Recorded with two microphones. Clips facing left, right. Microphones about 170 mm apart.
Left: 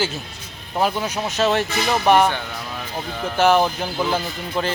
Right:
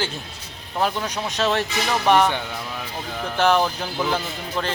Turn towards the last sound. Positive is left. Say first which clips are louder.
# left 3 dB
turn(degrees=5)  # may be behind; listen again after turning